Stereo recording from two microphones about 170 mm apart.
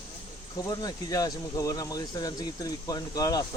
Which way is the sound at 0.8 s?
20° left (ahead or behind).